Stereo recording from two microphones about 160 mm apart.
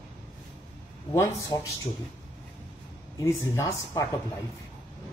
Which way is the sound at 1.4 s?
20° left (ahead or behind).